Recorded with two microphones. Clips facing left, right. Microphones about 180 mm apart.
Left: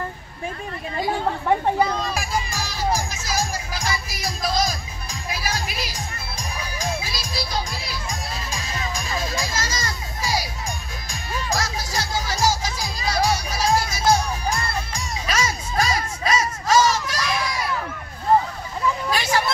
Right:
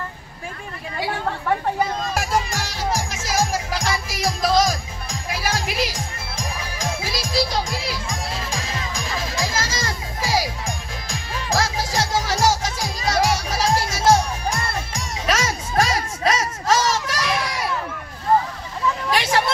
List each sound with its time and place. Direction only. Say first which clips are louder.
2.1 s music: right 4 dB; 80° right
19.0 s chatter: right 5 dB; 85° right